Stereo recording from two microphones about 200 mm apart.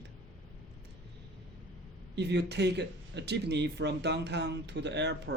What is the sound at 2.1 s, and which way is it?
Speech, 60° right (ahead or behind).